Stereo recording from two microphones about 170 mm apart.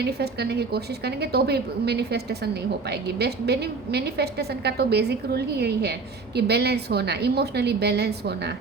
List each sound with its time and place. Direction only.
0.0 s a woman's voice: 70° right (ahead or behind)